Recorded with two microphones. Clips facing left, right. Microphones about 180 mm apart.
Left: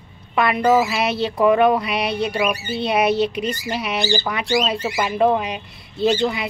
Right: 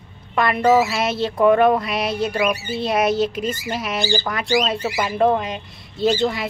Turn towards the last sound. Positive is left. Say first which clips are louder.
# even
turn(degrees=0)  # may be behind; listen again after turning